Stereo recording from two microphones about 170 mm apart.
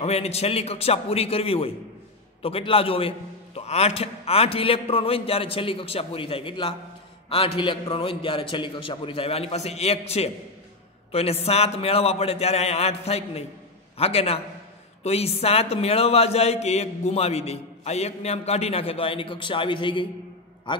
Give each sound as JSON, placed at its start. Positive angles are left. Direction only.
{"t": 0.0, "sound": "a man's voice", "side_deg": 35}